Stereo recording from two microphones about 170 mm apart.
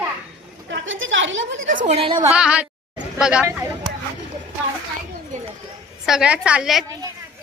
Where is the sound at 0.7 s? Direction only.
90° right.